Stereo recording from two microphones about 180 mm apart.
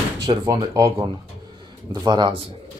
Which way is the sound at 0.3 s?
25° right (ahead or behind).